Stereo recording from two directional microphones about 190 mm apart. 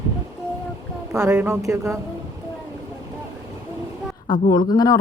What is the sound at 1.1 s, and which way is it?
Speech, 15° right (ahead or behind).